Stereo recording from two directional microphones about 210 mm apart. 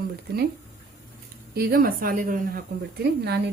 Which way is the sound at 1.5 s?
45° right (ahead or behind).